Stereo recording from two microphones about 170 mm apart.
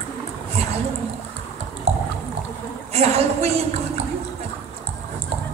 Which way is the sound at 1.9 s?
40° right (ahead or behind).